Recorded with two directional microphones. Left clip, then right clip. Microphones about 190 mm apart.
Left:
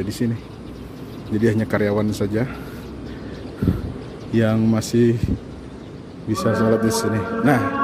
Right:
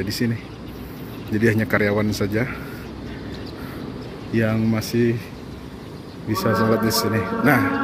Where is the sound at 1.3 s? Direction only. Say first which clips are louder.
Right 1 dB; 15° left (ahead or behind).